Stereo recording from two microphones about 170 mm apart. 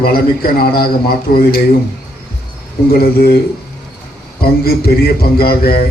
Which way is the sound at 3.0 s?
65° left (ahead or behind).